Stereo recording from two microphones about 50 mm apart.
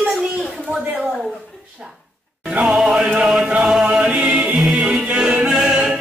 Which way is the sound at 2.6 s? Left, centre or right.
Centre.